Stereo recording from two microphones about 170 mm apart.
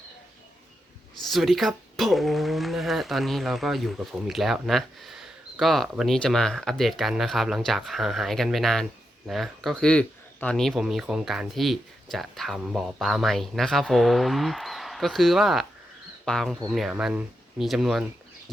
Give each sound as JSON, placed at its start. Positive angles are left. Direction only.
{"t": 1.2, "sound": "speech", "side_deg": 0}